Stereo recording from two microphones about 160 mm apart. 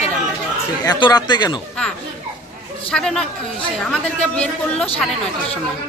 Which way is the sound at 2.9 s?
5° left (ahead or behind).